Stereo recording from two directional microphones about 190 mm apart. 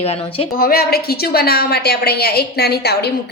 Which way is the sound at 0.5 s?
50° left (ahead or behind).